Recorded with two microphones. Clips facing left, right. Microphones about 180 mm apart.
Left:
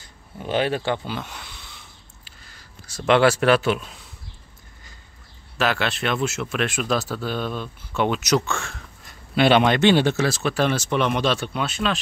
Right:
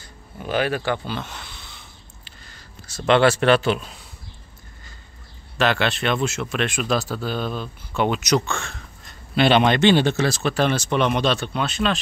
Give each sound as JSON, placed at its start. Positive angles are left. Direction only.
{"t": 0.0, "sound": "a sound", "side_deg": 25}
{"t": 2.2, "sound": "speech", "side_deg": 5}
{"t": 5.6, "sound": "speech", "side_deg": 5}